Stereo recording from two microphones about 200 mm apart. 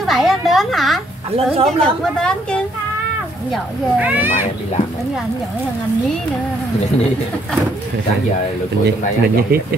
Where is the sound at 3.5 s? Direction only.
10° right (ahead or behind).